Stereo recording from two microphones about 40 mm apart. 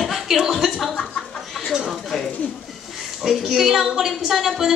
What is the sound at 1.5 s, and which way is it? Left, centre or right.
Child singing, centre.